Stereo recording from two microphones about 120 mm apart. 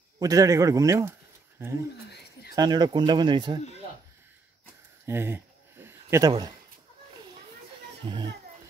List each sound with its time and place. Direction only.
0.2 s a man's voice: 30° right (ahead or behind)
2.5 s speech: 35° right (ahead or behind)
5.0 s a sound: 20° right (ahead or behind)
8.0 s speech: 40° right (ahead or behind)